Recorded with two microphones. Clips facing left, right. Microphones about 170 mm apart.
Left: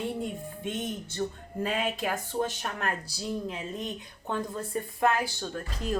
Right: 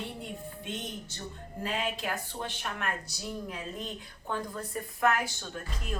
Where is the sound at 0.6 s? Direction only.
55° left (ahead or behind).